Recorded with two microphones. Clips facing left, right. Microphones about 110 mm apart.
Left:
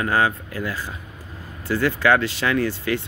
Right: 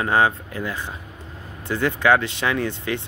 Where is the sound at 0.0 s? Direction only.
25° right (ahead or behind).